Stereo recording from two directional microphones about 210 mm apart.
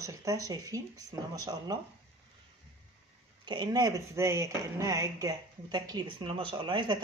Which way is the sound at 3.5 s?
20° right (ahead or behind).